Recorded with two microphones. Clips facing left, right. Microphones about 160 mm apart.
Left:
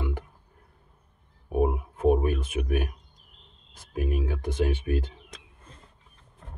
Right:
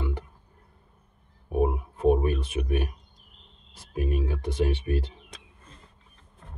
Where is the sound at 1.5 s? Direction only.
5° left (ahead or behind).